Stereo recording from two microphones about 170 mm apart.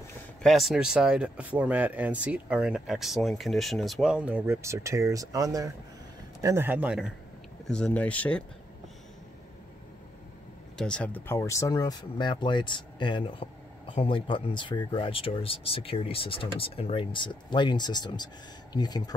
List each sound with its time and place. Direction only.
0.4 s speech: centre (ahead or behind)
7.6 s speech: 5° left (ahead or behind)
10.8 s speech: 5° left (ahead or behind); by 19.1 s 25° left (ahead or behind)